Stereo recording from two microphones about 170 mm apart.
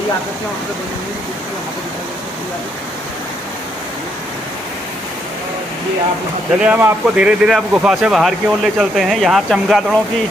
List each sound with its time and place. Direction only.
6.6 s speech: 5° right (ahead or behind)